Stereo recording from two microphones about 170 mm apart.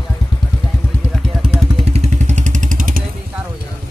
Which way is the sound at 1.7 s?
35° right (ahead or behind).